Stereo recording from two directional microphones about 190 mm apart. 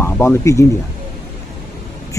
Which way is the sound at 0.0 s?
15° left (ahead or behind).